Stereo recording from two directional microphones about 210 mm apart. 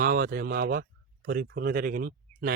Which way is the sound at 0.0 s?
45° right (ahead or behind).